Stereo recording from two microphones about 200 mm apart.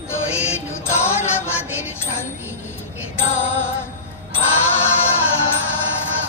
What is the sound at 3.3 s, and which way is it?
Music, 10° left (ahead or behind).